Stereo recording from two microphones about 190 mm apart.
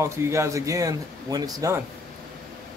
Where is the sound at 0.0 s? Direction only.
15° right (ahead or behind).